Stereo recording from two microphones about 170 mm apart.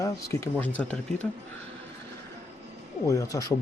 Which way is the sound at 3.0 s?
20° left (ahead or behind).